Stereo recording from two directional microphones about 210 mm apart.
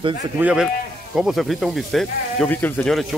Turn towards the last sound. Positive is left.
turn(degrees=5)  # may be behind; listen again after turning